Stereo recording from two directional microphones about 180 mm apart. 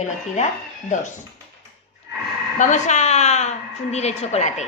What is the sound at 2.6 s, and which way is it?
Speech, 40° left (ahead or behind).